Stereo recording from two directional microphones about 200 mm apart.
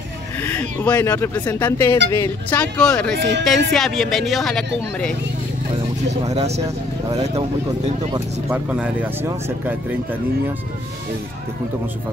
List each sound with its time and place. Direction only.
0.4 s speech: 10° left (ahead or behind)
3.2 s speech: 60° right (ahead or behind)
3.4 s speech: centre (ahead or behind)
6.2 s speech: 35° right (ahead or behind)
8.1 s speech: 10° right (ahead or behind)